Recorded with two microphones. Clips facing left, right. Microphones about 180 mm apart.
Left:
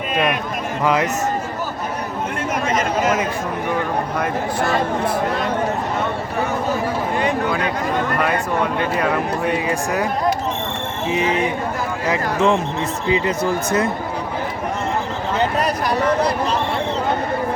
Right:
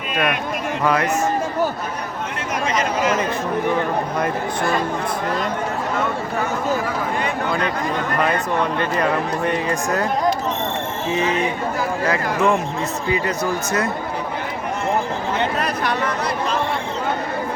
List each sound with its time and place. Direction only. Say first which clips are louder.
2.7 s chatter: left 1 dB; 50° left (ahead or behind)
9.5 s speech: left 1 dB; 10° left (ahead or behind)
11.1 s speech: left 1 dB; 15° left (ahead or behind)
15.5 s a sound: left 2 dB; 35° left (ahead or behind)